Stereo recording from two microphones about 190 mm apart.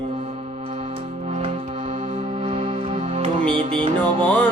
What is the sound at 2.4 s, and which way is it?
Music, 30° right (ahead or behind).